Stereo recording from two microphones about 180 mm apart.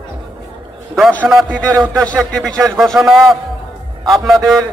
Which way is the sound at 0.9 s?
Centre (ahead or behind).